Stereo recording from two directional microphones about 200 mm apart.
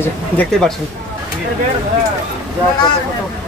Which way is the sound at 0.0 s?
5° left (ahead or behind).